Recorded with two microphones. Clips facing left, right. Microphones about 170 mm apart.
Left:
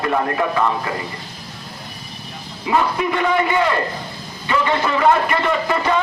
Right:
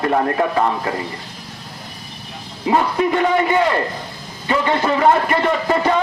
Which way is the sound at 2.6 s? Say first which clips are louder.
Right 2 dB; 35° right (ahead or behind).